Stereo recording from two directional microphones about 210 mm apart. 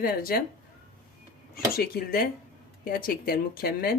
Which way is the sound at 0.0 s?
45° left (ahead or behind).